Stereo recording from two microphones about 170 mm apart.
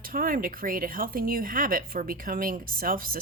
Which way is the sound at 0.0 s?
55° right (ahead or behind).